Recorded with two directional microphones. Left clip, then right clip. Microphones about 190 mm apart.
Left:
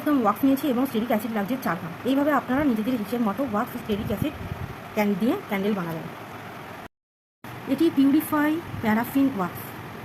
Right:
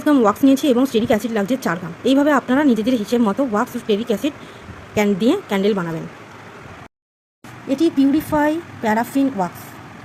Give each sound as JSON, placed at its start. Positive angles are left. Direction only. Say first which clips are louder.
{"t": 0.1, "sound": "speech", "louder": "right 7 dB", "side_deg": -50}
{"t": 4.9, "sound": "speech", "louder": "right 7 dB", "side_deg": -50}
{"t": 7.7, "sound": "speech", "louder": "right 4 dB", "side_deg": -30}